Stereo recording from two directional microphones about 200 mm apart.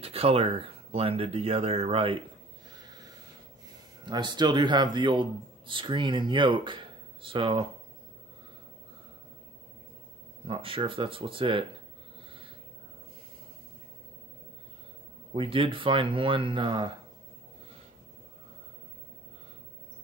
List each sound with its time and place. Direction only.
0.0 s speech: 30° right (ahead or behind)
4.0 s speech: 20° right (ahead or behind)
10.4 s speech: 25° right (ahead or behind)
15.3 s speech: 25° right (ahead or behind)